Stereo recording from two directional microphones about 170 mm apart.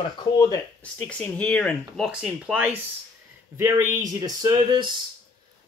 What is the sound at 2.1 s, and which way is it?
Speech, 5° right (ahead or behind).